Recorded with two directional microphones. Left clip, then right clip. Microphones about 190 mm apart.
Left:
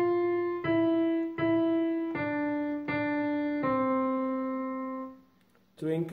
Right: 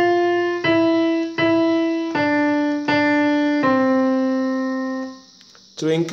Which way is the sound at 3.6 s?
40° right (ahead or behind).